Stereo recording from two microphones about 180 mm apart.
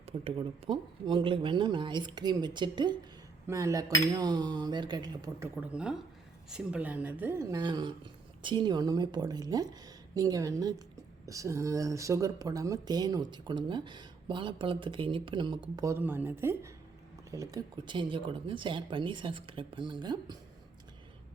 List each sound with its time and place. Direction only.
0.0 s speech: 35° right (ahead or behind)
5.5 s speech: 5° right (ahead or behind); by 20.4 s 25° right (ahead or behind)